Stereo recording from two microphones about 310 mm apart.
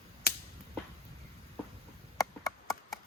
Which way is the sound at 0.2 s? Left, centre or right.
Left.